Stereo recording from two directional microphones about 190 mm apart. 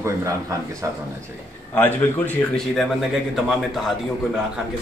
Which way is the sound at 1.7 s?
10° left (ahead or behind).